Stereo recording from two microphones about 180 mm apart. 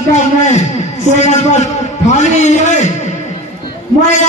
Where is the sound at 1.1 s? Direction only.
40° left (ahead or behind).